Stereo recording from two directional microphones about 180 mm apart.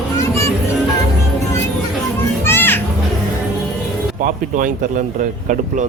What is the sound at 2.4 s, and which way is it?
Music, 10° left (ahead or behind).